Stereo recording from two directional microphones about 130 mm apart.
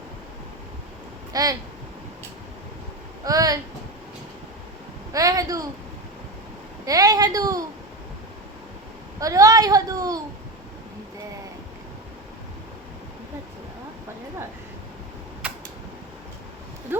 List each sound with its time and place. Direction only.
1.3 s speech: 30° right (ahead or behind)
3.2 s a sound: 30° right (ahead or behind)
5.1 s speech: 25° right (ahead or behind)
6.8 s speech: 30° right (ahead or behind)
9.2 s speech: 25° right (ahead or behind)
15.4 s camera: 10° right (ahead or behind)
16.9 s clip-clop: 15° right (ahead or behind)